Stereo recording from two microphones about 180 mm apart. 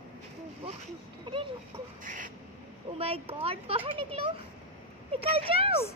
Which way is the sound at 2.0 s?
45° right (ahead or behind).